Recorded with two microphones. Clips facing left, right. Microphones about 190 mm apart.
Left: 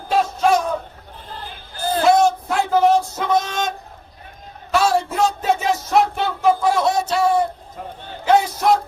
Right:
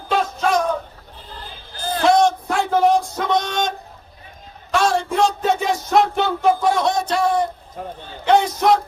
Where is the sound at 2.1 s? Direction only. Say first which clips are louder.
Even; 5° left (ahead or behind).